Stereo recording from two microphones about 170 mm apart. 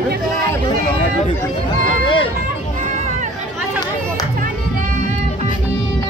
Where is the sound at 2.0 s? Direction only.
30° left (ahead or behind).